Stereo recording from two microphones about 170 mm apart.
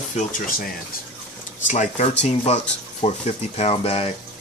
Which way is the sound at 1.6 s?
45° left (ahead or behind).